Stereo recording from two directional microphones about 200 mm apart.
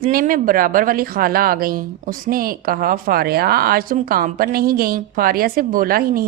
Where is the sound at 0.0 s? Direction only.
45° right (ahead or behind).